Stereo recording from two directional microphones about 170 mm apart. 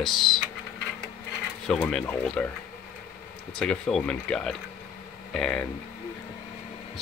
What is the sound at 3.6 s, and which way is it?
Speech, 5° left (ahead or behind).